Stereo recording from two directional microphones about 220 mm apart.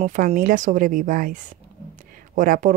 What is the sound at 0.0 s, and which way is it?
Speech, 35° right (ahead or behind).